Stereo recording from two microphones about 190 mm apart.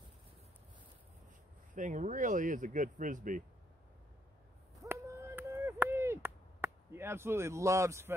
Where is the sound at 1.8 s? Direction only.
40° right (ahead or behind).